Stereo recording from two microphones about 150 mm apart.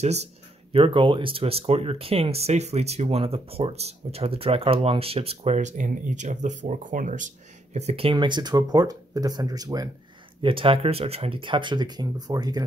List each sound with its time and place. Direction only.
0.0 s speech: 45° right (ahead or behind)
0.7 s speech: 35° right (ahead or behind)
10.4 s speech: 35° right (ahead or behind)